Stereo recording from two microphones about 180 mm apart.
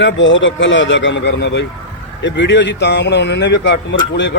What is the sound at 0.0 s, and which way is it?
A man's voice, 90° left.